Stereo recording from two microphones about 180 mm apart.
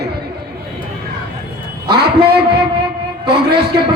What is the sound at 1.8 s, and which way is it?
Speech, 60° right (ahead or behind).